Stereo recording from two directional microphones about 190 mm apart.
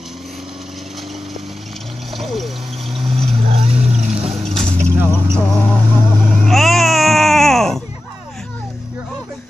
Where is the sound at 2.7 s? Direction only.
30° right (ahead or behind).